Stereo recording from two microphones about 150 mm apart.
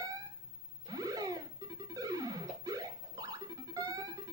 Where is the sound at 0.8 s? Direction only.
25° right (ahead or behind).